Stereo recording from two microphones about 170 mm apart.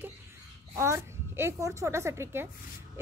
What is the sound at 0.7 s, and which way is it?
Speech, 15° right (ahead or behind).